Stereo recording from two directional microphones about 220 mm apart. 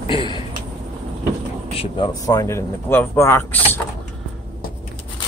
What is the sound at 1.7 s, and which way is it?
Speech, 25° left (ahead or behind).